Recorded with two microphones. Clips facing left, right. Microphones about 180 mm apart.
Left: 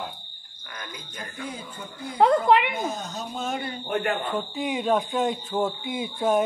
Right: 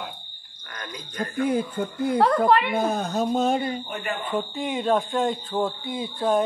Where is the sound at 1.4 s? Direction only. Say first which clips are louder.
Right 14 dB; 60° right (ahead or behind).